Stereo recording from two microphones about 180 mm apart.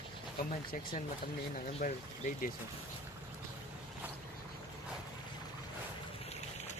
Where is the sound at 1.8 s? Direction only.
50° left (ahead or behind).